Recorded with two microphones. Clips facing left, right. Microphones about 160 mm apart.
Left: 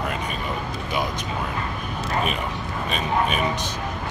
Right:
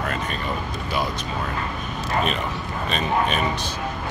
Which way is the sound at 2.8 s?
5° left (ahead or behind).